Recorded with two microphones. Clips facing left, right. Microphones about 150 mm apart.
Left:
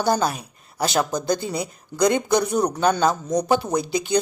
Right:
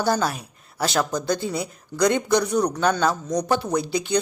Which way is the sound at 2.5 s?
25° left (ahead or behind).